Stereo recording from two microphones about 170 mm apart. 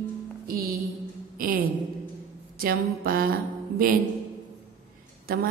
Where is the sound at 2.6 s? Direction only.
60° right (ahead or behind).